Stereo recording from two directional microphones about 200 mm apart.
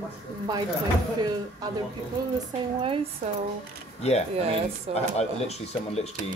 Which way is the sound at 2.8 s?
25° right (ahead or behind).